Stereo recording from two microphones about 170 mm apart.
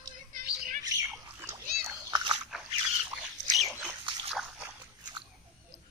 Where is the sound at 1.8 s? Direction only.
25° right (ahead or behind).